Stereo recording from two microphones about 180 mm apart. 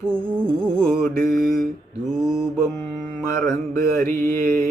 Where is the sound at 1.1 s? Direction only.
55° right (ahead or behind).